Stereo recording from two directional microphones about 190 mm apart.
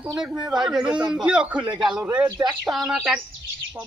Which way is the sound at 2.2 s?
15° right (ahead or behind).